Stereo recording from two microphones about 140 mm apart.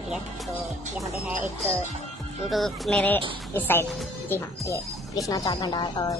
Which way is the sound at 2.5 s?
Centre (ahead or behind).